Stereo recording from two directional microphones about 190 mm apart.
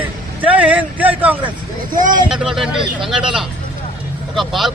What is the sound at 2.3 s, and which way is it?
A man's voice, centre (ahead or behind).